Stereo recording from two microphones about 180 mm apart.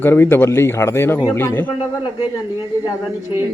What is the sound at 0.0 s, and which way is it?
Speech, 10° left (ahead or behind).